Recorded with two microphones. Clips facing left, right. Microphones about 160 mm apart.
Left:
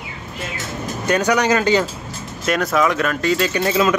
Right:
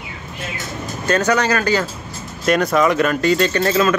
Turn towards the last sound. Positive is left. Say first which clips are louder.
# right 1 dB
turn(degrees=15)  # may be behind; listen again after turning